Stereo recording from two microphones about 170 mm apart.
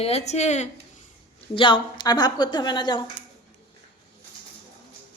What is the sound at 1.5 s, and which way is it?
A woman's voice, 30° left (ahead or behind).